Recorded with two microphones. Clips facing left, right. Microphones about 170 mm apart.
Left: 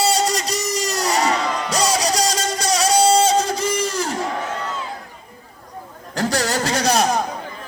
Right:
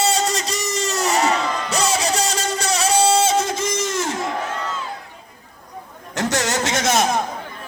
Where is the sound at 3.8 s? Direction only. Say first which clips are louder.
Even; 35° left (ahead or behind).